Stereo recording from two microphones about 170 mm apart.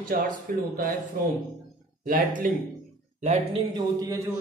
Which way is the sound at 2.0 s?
55° right (ahead or behind).